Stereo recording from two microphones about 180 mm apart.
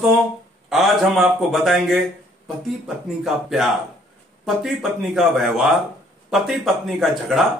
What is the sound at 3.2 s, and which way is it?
Speech, centre (ahead or behind).